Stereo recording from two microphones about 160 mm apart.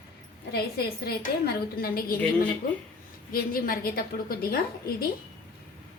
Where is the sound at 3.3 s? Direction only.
65° left (ahead or behind).